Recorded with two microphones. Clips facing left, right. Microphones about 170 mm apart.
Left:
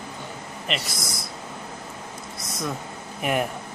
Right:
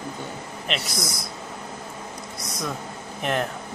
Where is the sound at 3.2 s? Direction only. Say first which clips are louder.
Left 1 dB; 10° left (ahead or behind).